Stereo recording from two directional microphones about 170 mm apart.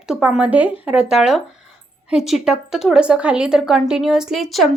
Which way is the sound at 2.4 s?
5° right (ahead or behind).